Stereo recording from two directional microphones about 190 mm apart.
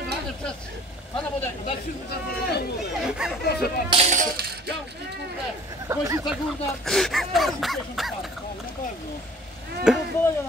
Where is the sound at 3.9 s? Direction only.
35° right (ahead or behind).